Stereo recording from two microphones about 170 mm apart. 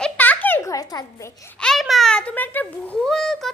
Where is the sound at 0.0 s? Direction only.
10° left (ahead or behind).